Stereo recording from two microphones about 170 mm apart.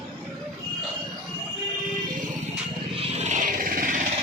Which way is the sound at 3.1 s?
45° right (ahead or behind).